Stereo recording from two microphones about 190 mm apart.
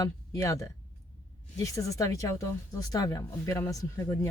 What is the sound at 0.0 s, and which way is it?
Speech, 15° left (ahead or behind).